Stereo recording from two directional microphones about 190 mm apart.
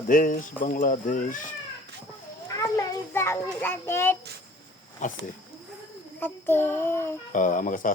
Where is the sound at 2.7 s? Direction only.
15° left (ahead or behind).